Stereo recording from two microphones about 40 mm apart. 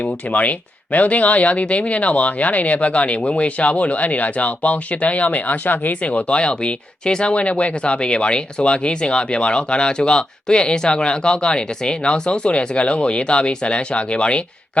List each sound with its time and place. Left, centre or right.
0.0 s speech: left
6.0 s speech: left